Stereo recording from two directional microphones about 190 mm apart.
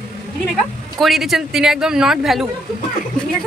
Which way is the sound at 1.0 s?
Centre (ahead or behind).